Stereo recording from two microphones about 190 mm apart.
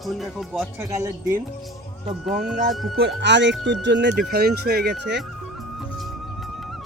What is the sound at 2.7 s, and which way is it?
Speech, centre (ahead or behind).